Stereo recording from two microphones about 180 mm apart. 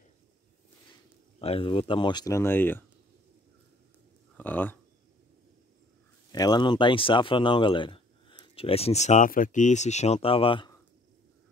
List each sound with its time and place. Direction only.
1.4 s speech: 30° left (ahead or behind); by 2.8 s 10° left (ahead or behind)
4.4 s speech: 10° left (ahead or behind)
6.3 s speech: 20° left (ahead or behind)